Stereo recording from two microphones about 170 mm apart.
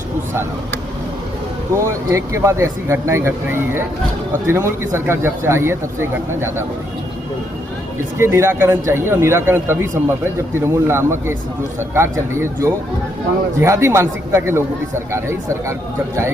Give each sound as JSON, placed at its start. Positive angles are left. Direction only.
{"t": 1.7, "sound": "speech", "side_deg": -15}
{"t": 8.2, "sound": "speech", "side_deg": -15}